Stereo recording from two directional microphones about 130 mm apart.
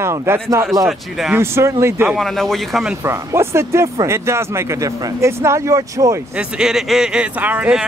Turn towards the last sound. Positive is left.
turn(degrees=-10)  # may be behind; listen again after turning